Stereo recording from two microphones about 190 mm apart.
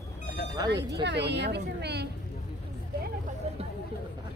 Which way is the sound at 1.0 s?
65° right (ahead or behind).